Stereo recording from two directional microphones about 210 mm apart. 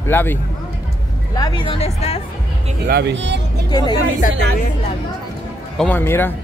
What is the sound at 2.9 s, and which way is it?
Speech, 55° right (ahead or behind).